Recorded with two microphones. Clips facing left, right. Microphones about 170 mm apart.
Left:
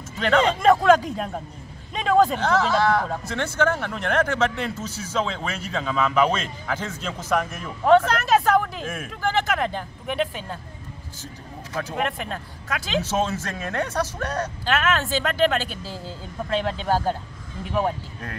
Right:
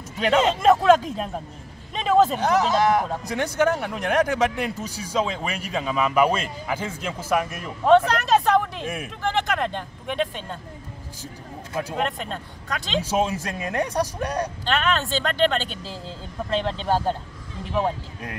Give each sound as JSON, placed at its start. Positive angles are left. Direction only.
{"t": 0.2, "sound": "a man's voice", "side_deg": -5}
{"t": 2.3, "sound": "speech", "side_deg": -15}
{"t": 11.9, "sound": "a man's voice", "side_deg": 0}
{"t": 13.0, "sound": "speech", "side_deg": -10}
{"t": 14.6, "sound": "a man's voice", "side_deg": 0}